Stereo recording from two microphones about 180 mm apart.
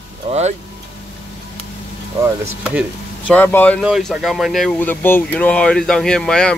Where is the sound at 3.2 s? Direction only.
10° left (ahead or behind).